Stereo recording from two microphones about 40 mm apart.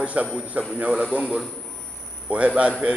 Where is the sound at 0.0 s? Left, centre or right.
Right.